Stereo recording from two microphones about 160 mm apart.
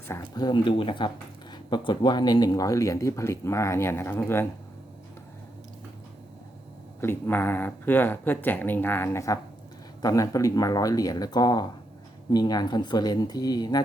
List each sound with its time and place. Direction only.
0.1 s speech: 25° left (ahead or behind)
7.0 s speech: 15° left (ahead or behind)